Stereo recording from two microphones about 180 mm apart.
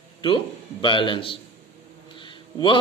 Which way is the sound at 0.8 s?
25° left (ahead or behind).